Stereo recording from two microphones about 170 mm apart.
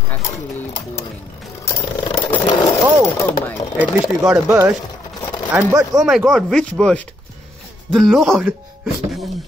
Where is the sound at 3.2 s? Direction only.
10° left (ahead or behind).